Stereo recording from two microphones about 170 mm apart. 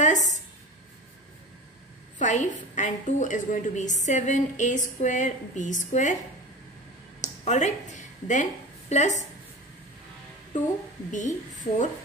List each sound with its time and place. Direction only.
2.1 s a woman's voice: 45° left (ahead or behind)
7.2 s a woman's voice: 45° left (ahead or behind)
11.1 s a woman's voice: 45° left (ahead or behind)